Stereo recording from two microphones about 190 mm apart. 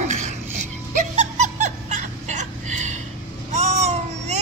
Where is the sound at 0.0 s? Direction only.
40° right (ahead or behind).